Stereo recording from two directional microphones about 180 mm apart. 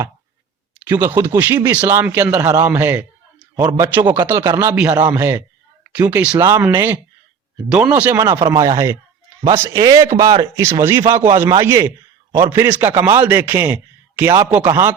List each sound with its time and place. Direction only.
0.9 s speech: 10° right (ahead or behind)
8.2 s a man's voice: 20° right (ahead or behind)